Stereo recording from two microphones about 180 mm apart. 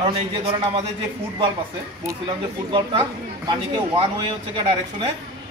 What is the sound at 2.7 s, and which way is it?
Speech, 25° right (ahead or behind).